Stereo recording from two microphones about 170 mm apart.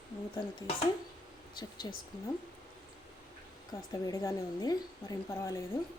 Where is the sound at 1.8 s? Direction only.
25° left (ahead or behind).